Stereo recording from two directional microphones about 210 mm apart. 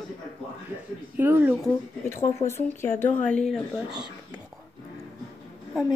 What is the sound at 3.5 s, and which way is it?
Speech, centre (ahead or behind).